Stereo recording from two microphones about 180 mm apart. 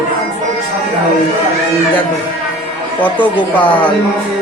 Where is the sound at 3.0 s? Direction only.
10° left (ahead or behind).